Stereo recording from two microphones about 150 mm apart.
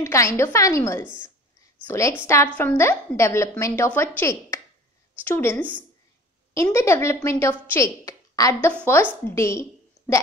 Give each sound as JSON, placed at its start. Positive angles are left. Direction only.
{"t": 0.0, "sound": "a woman's voice", "side_deg": 20}